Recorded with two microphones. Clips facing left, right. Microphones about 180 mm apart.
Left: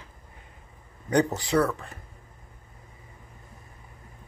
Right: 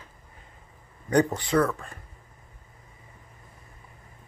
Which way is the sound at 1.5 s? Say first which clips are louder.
Even; 15° left (ahead or behind).